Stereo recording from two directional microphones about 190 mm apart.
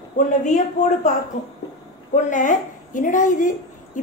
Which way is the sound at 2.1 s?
40° left (ahead or behind).